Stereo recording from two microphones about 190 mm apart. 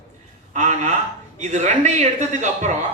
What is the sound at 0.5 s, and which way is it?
A man's voice, 40° right (ahead or behind).